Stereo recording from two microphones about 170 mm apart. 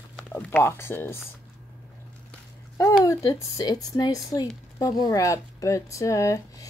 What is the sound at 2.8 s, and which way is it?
Speech, 15° left (ahead or behind).